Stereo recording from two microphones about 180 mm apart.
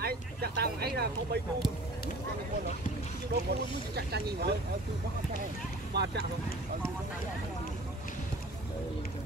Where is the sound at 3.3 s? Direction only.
65° right (ahead or behind).